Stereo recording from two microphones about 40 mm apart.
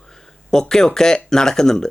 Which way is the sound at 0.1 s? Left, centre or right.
Centre.